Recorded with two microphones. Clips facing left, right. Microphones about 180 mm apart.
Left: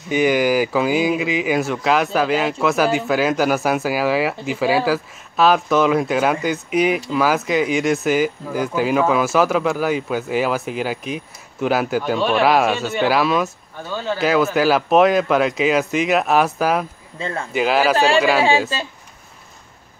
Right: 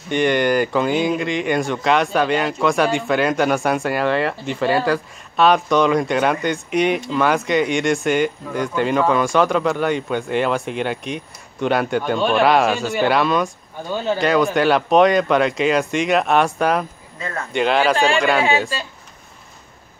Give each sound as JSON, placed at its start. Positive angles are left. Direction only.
{"t": 0.1, "sound": "speech", "side_deg": 5}
{"t": 13.8, "sound": "speech", "side_deg": -15}
{"t": 14.1, "sound": "speech", "side_deg": 5}
{"t": 17.2, "sound": "speech", "side_deg": 25}
{"t": 17.5, "sound": "speech", "side_deg": 5}